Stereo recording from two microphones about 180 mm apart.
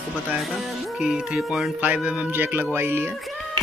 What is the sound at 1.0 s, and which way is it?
Speech, 5° right (ahead or behind).